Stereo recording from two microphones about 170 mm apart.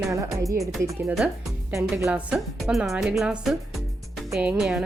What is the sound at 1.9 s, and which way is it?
Speech, 15° right (ahead or behind).